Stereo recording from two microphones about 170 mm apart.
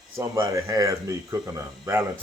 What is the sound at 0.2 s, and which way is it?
Speech, 20° right (ahead or behind).